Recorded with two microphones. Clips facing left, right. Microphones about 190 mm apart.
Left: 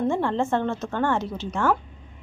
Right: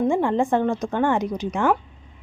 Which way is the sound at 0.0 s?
15° right (ahead or behind).